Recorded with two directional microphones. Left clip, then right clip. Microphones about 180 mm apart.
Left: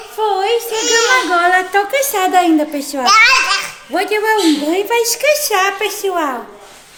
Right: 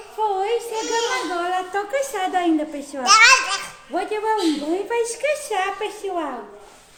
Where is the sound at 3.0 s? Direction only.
25° right (ahead or behind).